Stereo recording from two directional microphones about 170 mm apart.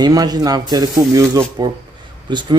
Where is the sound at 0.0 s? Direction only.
25° right (ahead or behind).